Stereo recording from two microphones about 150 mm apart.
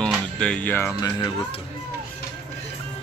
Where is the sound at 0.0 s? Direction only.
5° left (ahead or behind).